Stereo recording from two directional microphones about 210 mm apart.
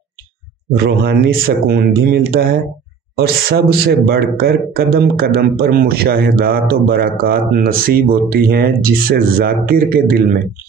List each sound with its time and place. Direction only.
0.8 s speech: 45° right (ahead or behind)